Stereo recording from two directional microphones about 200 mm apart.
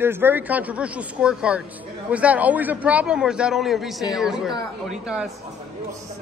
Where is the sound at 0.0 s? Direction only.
10° right (ahead or behind).